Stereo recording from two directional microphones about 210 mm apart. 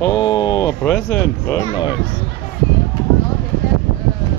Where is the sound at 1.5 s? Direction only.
20° left (ahead or behind).